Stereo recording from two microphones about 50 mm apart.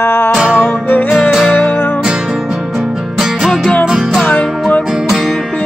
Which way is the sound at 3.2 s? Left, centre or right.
Centre.